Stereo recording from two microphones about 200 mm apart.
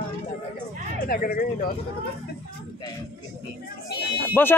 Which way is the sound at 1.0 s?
50° left (ahead or behind).